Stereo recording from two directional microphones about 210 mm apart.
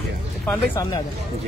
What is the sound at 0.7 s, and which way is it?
Speech, 20° left (ahead or behind).